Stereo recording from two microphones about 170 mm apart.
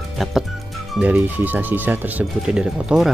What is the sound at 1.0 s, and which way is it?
Speech, 10° right (ahead or behind).